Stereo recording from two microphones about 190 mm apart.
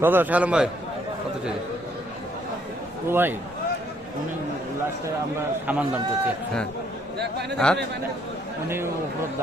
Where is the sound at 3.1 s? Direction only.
10° right (ahead or behind).